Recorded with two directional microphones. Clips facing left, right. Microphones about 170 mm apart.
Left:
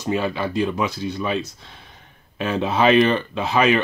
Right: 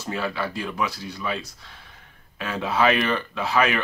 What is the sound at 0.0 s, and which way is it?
Speech, 20° left (ahead or behind).